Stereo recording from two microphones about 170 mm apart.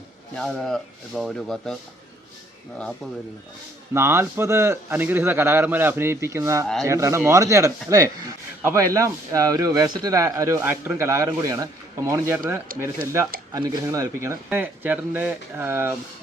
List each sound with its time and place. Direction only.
0.3 s speech: centre (ahead or behind)
3.9 s speech: 15° right (ahead or behind)
13.5 s speech: 20° right (ahead or behind)